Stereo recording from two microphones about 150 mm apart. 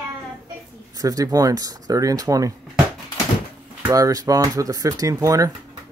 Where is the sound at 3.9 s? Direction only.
25° right (ahead or behind).